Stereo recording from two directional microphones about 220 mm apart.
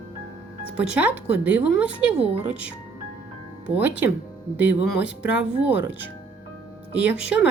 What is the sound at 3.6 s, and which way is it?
A woman's voice, 5° right (ahead or behind).